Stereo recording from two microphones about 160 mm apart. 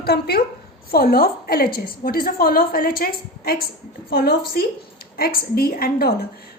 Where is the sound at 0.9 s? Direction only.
70° left (ahead or behind).